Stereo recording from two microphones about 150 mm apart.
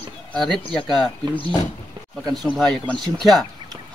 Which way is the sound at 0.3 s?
5° left (ahead or behind).